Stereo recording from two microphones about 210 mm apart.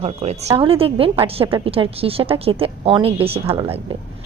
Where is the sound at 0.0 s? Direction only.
30° right (ahead or behind).